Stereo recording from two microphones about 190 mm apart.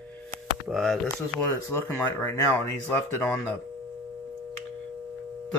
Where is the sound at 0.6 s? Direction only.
Centre (ahead or behind).